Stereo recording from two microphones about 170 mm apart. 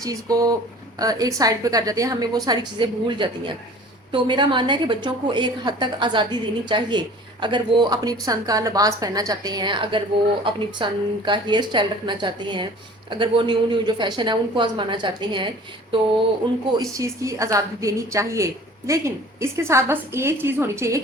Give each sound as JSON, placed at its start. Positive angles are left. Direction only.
{"t": 0.0, "sound": "a woman's voice", "side_deg": -20}
{"t": 16.7, "sound": "a woman's voice", "side_deg": -20}